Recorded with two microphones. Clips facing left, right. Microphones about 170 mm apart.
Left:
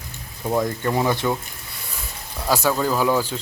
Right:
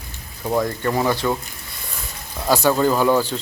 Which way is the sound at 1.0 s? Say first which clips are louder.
Right 2 dB; 15° left (ahead or behind).